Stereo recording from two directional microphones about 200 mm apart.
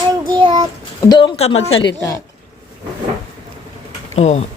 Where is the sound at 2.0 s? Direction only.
15° left (ahead or behind).